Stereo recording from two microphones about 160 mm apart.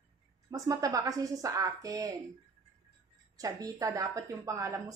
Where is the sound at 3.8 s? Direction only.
20° right (ahead or behind).